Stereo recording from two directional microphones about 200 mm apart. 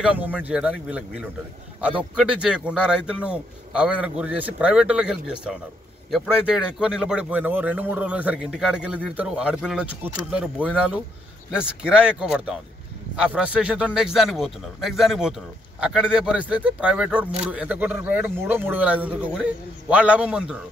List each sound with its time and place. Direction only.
0.0 s speech: 5° right (ahead or behind)